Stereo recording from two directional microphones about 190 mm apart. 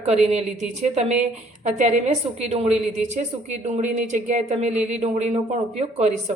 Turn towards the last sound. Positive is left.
turn(degrees=-35)  # may be behind; listen again after turning